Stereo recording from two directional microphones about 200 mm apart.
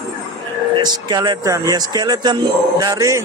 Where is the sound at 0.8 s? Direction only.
20° right (ahead or behind).